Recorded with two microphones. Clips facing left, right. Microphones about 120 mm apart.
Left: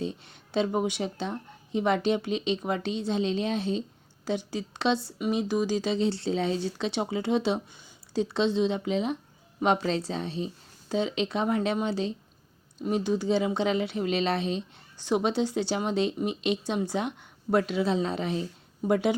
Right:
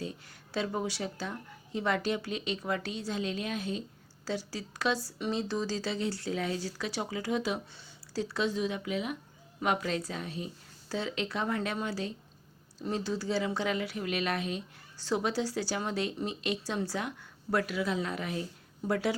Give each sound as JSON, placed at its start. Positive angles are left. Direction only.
{"t": 0.0, "sound": "speech", "side_deg": 25}
{"t": 5.2, "sound": "speech", "side_deg": 15}